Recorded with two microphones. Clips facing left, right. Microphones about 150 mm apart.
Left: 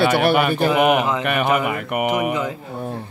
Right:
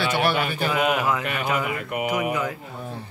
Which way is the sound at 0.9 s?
20° left (ahead or behind).